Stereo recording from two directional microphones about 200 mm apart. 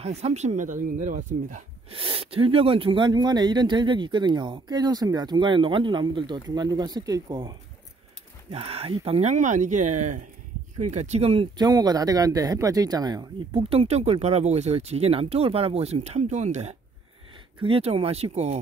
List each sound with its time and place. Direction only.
0.0 s speech: 35° right (ahead or behind)
2.0 s speech: 25° right (ahead or behind)